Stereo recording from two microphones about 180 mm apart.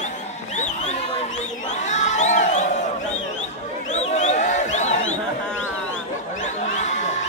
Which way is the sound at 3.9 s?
40° left (ahead or behind).